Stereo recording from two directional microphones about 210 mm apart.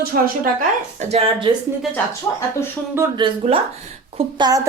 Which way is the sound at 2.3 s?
15° left (ahead or behind).